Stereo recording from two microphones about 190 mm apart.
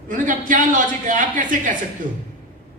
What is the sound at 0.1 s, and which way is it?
A man's voice, 45° right (ahead or behind).